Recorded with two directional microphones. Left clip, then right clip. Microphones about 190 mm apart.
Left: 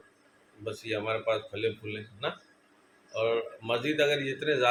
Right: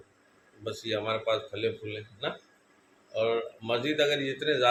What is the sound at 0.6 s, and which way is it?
A man's voice, 10° right (ahead or behind).